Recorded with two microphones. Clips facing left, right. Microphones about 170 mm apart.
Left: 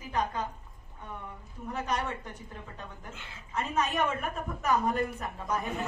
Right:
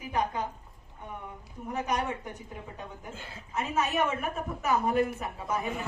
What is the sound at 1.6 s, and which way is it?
A woman's voice, 10° right (ahead or behind).